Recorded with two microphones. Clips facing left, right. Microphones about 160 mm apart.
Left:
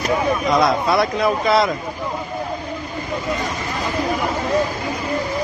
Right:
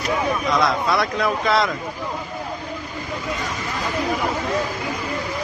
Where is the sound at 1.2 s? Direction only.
10° left (ahead or behind).